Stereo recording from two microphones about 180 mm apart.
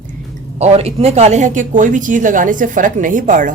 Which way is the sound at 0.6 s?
35° right (ahead or behind).